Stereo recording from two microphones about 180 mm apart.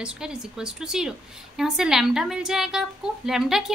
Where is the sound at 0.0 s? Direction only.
5° right (ahead or behind).